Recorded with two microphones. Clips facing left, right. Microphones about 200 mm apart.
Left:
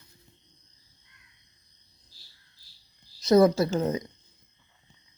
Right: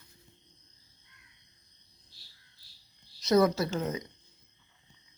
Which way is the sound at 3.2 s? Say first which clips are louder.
Left 5 dB; 30° left (ahead or behind).